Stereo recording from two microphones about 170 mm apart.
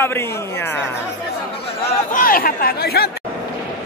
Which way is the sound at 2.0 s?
55° left (ahead or behind).